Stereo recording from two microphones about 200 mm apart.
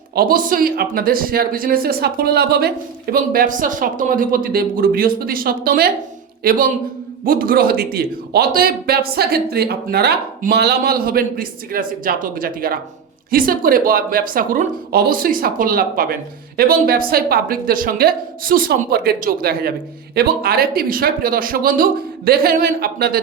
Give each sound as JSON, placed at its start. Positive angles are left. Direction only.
{"t": 0.1, "sound": "speech", "side_deg": -45}